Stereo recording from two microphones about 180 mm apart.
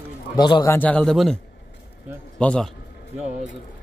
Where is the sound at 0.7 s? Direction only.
10° left (ahead or behind).